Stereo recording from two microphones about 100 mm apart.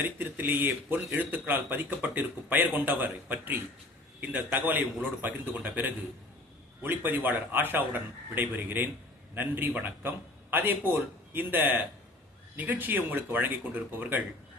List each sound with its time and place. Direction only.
0.0 s a man's voice: 20° right (ahead or behind)